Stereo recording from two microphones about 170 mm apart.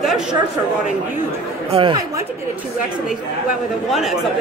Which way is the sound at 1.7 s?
30° right (ahead or behind).